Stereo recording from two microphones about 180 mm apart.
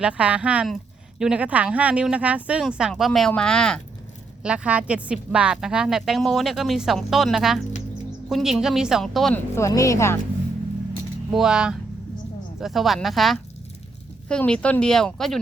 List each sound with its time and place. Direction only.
0.0 s a woman's voice: 5° right (ahead or behind)
4.4 s a woman's voice: 5° right (ahead or behind)
9.6 s speech: 15° left (ahead or behind)
11.3 s a woman's voice: 5° right (ahead or behind)